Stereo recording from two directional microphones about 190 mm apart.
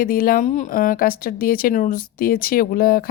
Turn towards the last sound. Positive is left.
turn(degrees=50)  # may be behind; listen again after turning